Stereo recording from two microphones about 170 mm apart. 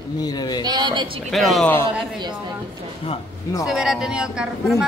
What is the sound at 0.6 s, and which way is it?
Speech, 25° right (ahead or behind).